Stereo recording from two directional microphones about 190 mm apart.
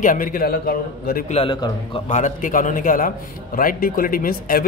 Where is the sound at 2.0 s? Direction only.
40° left (ahead or behind).